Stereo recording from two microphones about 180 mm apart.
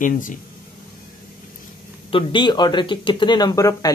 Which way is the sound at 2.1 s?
25° left (ahead or behind).